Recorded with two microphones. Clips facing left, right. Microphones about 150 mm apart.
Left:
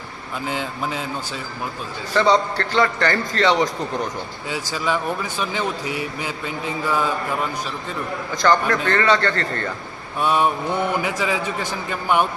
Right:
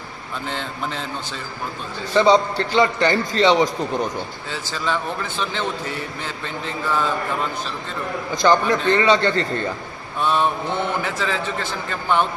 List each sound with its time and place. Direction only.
0.4 s a man's voice: 10° left (ahead or behind)
2.1 s a man's voice: 20° right (ahead or behind)
4.4 s a man's voice: 10° left (ahead or behind)
8.4 s a man's voice: 15° right (ahead or behind)
10.2 s a man's voice: 10° left (ahead or behind)